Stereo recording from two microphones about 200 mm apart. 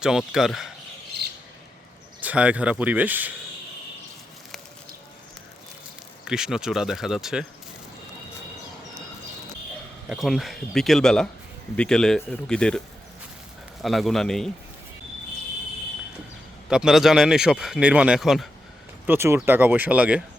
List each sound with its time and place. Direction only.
0.0 s speech: centre (ahead or behind)
2.2 s speech: 5° right (ahead or behind)
6.2 s speech: 5° right (ahead or behind)
10.1 s speech: centre (ahead or behind)
13.8 s speech: centre (ahead or behind)
16.6 s speech: 5° right (ahead or behind)
19.0 s speech: 10° right (ahead or behind)